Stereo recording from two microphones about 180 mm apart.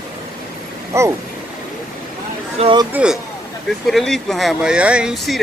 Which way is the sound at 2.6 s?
25° right (ahead or behind).